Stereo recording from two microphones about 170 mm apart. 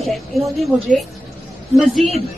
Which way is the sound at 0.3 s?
Centre (ahead or behind).